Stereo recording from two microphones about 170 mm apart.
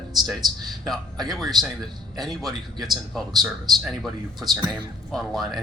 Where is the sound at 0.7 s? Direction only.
Centre (ahead or behind).